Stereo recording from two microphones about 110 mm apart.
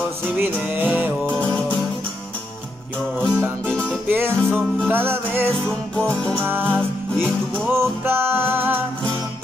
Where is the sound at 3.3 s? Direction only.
20° right (ahead or behind).